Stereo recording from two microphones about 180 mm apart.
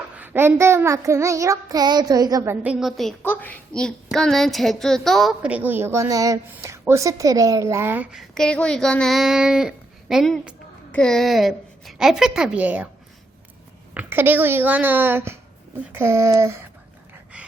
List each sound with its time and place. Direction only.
0.2 s a woman's voice: 10° right (ahead or behind)
2.8 s a woman's voice: centre (ahead or behind)
8.4 s a child's voice: 5° left (ahead or behind)
13.9 s a woman's voice: 10° right (ahead or behind)